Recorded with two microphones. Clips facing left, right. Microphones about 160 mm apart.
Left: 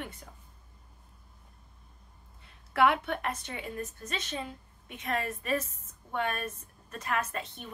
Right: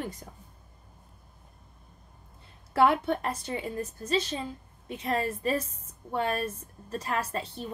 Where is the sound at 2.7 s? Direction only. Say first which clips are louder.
Right 3 dB; 35° right (ahead or behind).